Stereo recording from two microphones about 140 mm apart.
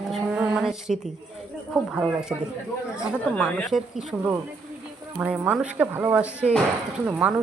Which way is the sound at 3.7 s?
5° right (ahead or behind).